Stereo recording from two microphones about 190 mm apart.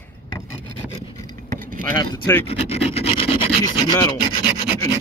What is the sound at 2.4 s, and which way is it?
Rub, 30° left (ahead or behind).